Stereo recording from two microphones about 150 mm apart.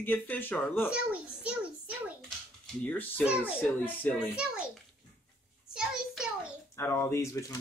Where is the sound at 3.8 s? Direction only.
15° left (ahead or behind).